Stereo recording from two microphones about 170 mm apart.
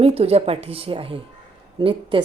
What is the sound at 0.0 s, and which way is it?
A woman's voice, 35° right (ahead or behind).